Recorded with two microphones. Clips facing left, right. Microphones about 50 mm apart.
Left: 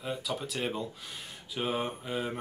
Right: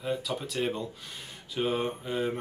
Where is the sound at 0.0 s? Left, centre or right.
Centre.